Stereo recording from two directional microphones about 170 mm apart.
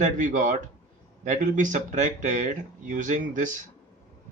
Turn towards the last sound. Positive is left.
turn(degrees=-50)  # may be behind; listen again after turning